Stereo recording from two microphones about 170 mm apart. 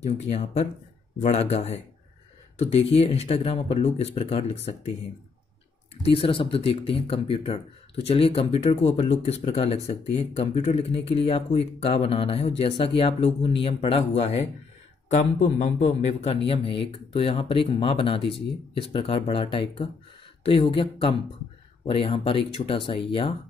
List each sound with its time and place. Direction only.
0.0 s speech: 40° left (ahead or behind)
6.0 s speech: 35° left (ahead or behind)